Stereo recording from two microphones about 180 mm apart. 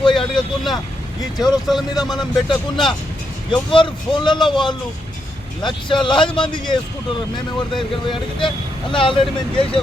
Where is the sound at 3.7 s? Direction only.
25° left (ahead or behind).